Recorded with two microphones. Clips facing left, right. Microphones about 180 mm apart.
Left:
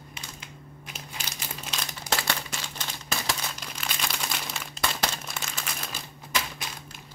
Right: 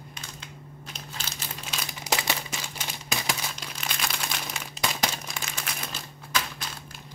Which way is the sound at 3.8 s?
Centre (ahead or behind).